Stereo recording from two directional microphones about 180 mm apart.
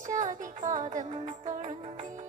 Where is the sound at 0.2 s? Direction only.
40° right (ahead or behind).